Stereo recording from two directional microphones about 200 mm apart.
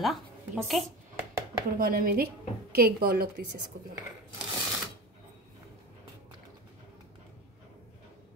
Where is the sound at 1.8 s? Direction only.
45° right (ahead or behind).